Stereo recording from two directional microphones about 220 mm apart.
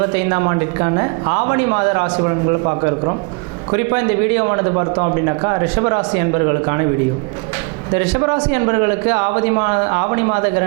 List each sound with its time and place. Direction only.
0.2 s a man's voice: 20° right (ahead or behind)
8.1 s a man's voice: 25° right (ahead or behind)